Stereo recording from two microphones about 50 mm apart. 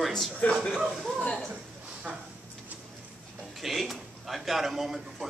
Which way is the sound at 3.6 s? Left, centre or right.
Centre.